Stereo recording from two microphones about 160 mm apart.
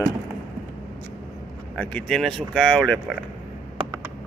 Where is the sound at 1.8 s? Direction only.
10° left (ahead or behind).